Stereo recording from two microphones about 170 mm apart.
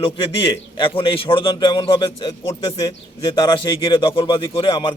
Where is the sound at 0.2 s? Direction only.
30° left (ahead or behind).